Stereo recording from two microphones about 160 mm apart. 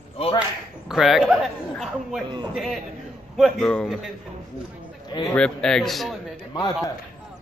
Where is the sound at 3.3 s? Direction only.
5° left (ahead or behind).